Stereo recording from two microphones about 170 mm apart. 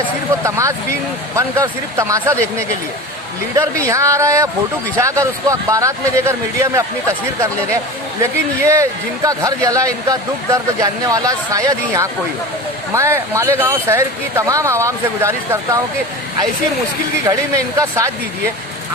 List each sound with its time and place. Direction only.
0.4 s speech: 15° right (ahead or behind)
3.8 s a man's voice: 20° right (ahead or behind)
8.2 s a man's voice: 15° right (ahead or behind)
17.7 s speech: 20° right (ahead or behind)